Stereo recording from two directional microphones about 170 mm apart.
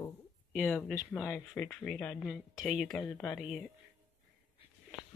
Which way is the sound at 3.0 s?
15° left (ahead or behind).